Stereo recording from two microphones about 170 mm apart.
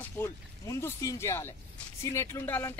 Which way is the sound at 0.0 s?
15° left (ahead or behind).